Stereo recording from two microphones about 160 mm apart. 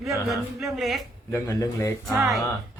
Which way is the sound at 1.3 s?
15° left (ahead or behind).